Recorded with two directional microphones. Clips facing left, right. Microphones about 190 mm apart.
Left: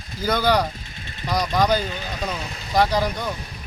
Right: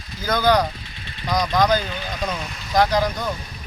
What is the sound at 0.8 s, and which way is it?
Vehicle, 45° left (ahead or behind).